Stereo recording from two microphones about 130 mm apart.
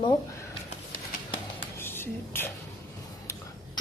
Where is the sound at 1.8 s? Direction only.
15° left (ahead or behind).